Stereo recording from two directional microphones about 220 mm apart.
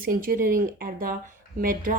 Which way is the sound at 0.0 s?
40° right (ahead or behind).